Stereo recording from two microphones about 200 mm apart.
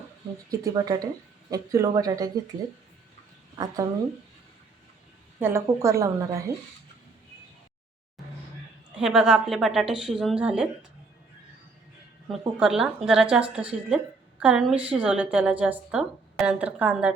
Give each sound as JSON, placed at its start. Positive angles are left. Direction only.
{"t": 0.5, "sound": "a woman's voice", "side_deg": -15}
{"t": 3.5, "sound": "speech", "side_deg": -20}
{"t": 5.5, "sound": "a woman's voice", "side_deg": -15}
{"t": 9.0, "sound": "a woman's voice", "side_deg": 0}
{"t": 12.3, "sound": "a woman's voice", "side_deg": 0}